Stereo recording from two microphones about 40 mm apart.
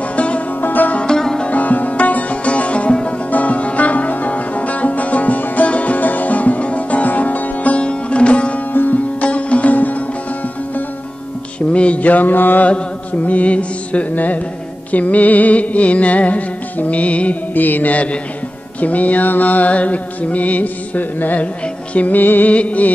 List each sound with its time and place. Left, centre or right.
0.1 s music: left
0.6 s music: left
1.0 s sitar: centre
1.5 s music: left
3.3 s music: left
7.8 s sitar: left
8.7 s sitar: left
9.2 s sitar: left
11.7 s mantra: left
12.6 s music: left
14.1 s mantra: left
17.6 s mantra: left
22.5 s mantra: left